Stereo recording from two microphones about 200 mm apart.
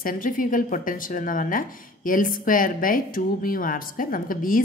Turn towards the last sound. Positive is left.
turn(degrees=45)  # may be behind; listen again after turning